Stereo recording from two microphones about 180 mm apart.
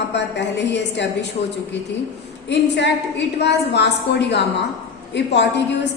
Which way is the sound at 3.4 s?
70° left (ahead or behind).